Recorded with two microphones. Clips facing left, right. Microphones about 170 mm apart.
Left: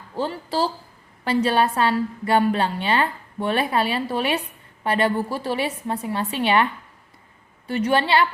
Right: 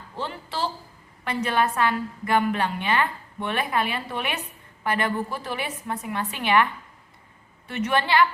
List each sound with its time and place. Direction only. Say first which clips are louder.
0.2 s a woman's voice: left 6 dB; 35° left (ahead or behind)
7.7 s a woman's voice: left 3 dB; 30° left (ahead or behind)